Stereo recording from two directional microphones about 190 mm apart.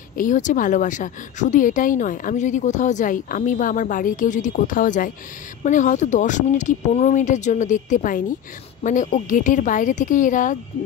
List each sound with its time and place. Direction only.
0.2 s speech: 40° left (ahead or behind)